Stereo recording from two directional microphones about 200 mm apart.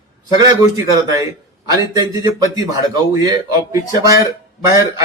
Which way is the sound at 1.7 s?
15° right (ahead or behind).